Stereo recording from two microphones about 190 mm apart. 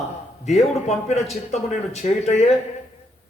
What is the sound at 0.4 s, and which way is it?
A man's voice, 35° left (ahead or behind).